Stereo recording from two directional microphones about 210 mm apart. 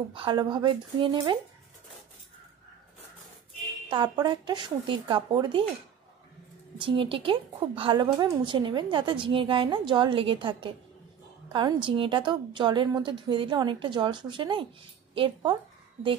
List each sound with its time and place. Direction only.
0.1 s a woman's voice: 25° right (ahead or behind)
3.9 s a woman's voice: 20° right (ahead or behind)
6.8 s a woman's voice: 25° right (ahead or behind)